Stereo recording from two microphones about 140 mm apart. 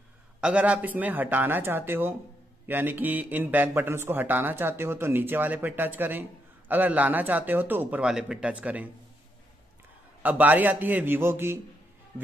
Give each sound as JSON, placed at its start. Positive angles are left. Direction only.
{"t": 0.4, "sound": "speech", "side_deg": -10}
{"t": 10.2, "sound": "speech", "side_deg": -10}